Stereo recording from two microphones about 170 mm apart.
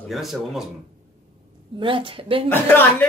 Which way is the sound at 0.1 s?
Centre (ahead or behind).